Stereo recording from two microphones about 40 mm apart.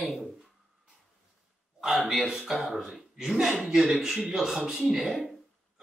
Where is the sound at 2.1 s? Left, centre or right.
Centre.